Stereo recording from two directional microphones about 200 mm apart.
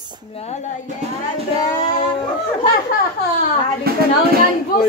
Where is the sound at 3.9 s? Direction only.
50° right (ahead or behind).